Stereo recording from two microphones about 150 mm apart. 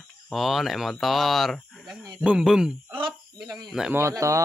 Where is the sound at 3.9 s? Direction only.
20° right (ahead or behind).